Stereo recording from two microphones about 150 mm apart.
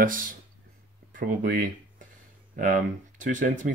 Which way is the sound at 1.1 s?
70° right (ahead or behind).